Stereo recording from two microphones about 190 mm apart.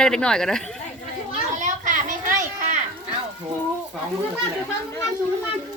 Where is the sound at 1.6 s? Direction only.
40° right (ahead or behind).